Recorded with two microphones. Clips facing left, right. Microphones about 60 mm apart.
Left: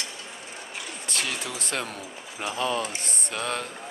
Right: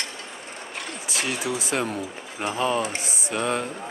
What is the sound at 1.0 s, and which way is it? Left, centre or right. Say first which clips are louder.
Speech: right 4 dB; centre.